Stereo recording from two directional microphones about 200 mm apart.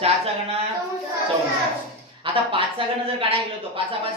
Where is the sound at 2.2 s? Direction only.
25° right (ahead or behind).